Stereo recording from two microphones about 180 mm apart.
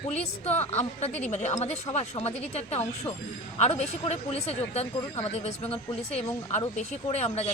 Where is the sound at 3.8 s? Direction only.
35° left (ahead or behind).